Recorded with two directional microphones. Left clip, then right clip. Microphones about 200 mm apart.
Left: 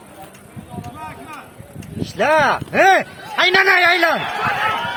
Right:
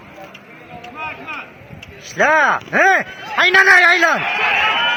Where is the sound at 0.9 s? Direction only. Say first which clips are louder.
Right 9 dB; 30° right (ahead or behind).